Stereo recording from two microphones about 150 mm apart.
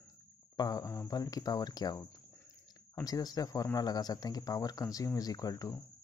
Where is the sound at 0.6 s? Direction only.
25° left (ahead or behind).